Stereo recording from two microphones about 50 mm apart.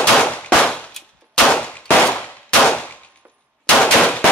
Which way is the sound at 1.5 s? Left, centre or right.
Left.